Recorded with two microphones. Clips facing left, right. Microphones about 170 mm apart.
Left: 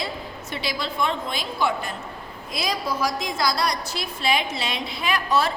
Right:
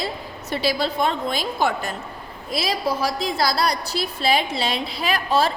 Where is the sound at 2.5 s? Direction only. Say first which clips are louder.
Right 3 dB; 30° right (ahead or behind).